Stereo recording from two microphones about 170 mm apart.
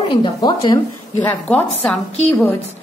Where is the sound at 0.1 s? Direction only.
25° left (ahead or behind).